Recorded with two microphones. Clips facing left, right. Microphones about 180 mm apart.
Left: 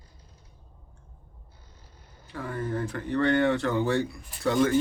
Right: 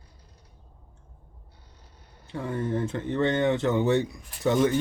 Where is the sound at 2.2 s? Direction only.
25° right (ahead or behind).